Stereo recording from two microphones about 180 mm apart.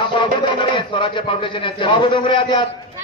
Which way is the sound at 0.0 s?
25° left (ahead or behind).